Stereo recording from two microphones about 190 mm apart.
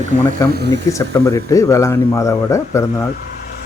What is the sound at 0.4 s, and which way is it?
Speech, 15° left (ahead or behind).